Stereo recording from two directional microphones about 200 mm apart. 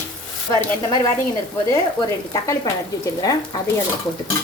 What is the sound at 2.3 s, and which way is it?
Speech, 15° left (ahead or behind).